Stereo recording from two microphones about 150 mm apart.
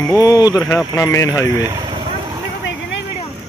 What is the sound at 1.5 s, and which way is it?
Speech, 15° right (ahead or behind).